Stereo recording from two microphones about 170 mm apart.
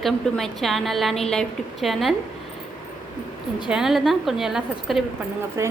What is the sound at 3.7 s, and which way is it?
A woman's voice, centre (ahead or behind).